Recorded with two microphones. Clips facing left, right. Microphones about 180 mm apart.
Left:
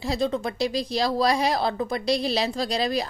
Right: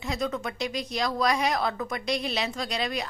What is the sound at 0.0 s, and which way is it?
A woman's voice, 30° left (ahead or behind).